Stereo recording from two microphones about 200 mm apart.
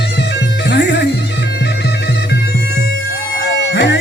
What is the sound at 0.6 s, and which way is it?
Music, 60° left (ahead or behind).